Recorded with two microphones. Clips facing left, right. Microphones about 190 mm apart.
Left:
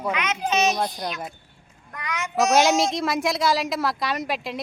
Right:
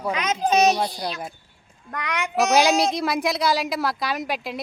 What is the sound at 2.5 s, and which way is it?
A woman's voice, centre (ahead or behind).